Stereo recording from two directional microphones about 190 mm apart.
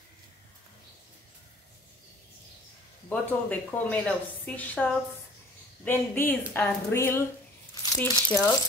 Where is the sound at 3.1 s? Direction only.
10° left (ahead or behind).